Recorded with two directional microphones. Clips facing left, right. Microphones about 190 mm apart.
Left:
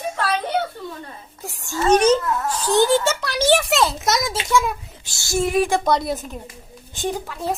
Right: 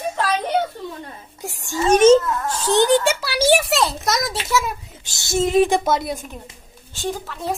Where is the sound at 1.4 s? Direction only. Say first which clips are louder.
Even; 15° right (ahead or behind).